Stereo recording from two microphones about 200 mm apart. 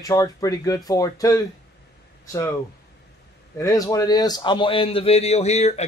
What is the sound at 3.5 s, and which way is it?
A man's voice, 15° left (ahead or behind).